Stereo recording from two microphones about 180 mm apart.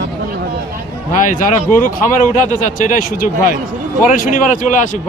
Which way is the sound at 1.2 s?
45° left (ahead or behind).